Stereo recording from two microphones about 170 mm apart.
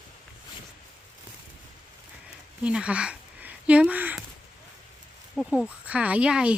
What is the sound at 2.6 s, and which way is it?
Speech, 5° right (ahead or behind).